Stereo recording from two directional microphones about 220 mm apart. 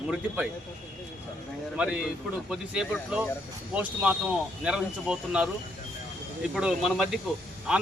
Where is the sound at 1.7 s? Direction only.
5° right (ahead or behind).